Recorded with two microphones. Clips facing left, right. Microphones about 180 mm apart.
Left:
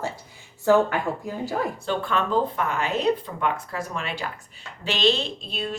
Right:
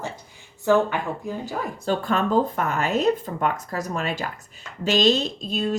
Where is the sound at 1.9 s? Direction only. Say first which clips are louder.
Right 5 dB; 40° right (ahead or behind).